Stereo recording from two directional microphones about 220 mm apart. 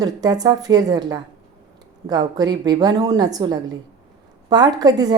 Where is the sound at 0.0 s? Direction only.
15° right (ahead or behind).